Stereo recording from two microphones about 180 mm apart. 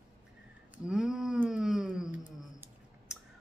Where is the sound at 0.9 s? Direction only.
5° right (ahead or behind).